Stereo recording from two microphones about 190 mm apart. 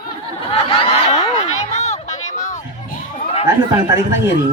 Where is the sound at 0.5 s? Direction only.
30° left (ahead or behind).